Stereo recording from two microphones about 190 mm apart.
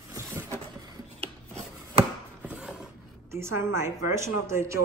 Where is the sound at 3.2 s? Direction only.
15° right (ahead or behind).